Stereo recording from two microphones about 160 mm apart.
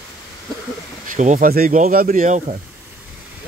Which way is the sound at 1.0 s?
50° right (ahead or behind).